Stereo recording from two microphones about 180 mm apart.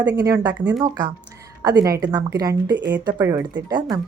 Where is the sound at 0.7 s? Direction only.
25° right (ahead or behind).